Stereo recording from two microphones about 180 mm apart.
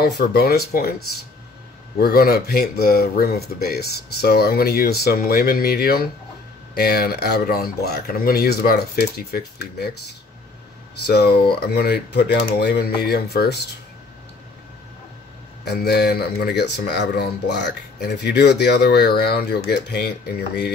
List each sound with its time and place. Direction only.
0.0 s speech: 60° left (ahead or behind)
2.0 s speech: 60° left (ahead or behind)
11.1 s speech: 60° left (ahead or behind)
15.6 s speech: 65° left (ahead or behind)